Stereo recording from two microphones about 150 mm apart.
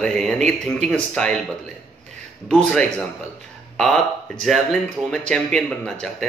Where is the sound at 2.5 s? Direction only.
5° left (ahead or behind).